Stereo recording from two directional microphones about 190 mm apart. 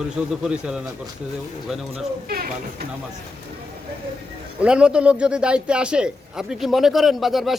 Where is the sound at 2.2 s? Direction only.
50° right (ahead or behind).